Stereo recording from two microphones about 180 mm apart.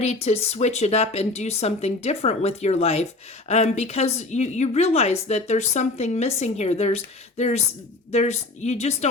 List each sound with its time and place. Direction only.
0.0 s speech: 35° left (ahead or behind)